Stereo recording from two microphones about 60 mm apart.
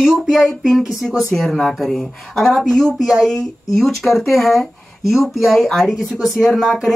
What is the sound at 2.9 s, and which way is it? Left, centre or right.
Speech, centre.